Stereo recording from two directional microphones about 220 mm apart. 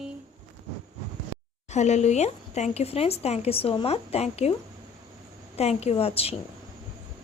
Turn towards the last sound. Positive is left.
turn(degrees=25)  # may be behind; listen again after turning